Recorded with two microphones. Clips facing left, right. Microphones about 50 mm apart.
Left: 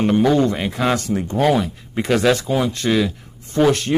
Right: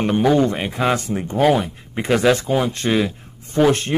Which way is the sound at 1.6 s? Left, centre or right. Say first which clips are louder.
Left 2 dB; right.